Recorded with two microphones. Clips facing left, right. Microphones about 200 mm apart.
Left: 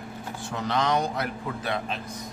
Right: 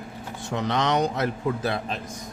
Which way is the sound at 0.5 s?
20° right (ahead or behind).